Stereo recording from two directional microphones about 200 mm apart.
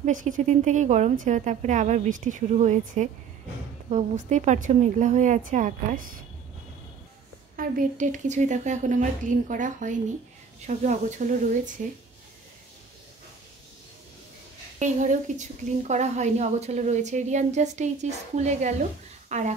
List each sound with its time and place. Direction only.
0.0 s speech: 40° right (ahead or behind)
7.5 s speech: 40° right (ahead or behind)
14.8 s speech: 40° right (ahead or behind)
19.2 s a sound: 35° right (ahead or behind)